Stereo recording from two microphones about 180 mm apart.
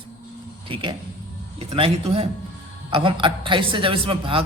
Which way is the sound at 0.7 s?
30° right (ahead or behind).